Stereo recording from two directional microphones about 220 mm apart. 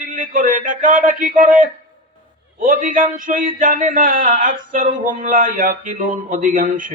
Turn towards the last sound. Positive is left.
turn(degrees=-35)  # may be behind; listen again after turning